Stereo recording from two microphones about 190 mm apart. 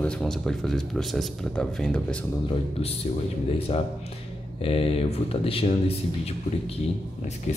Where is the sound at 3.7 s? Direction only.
30° left (ahead or behind).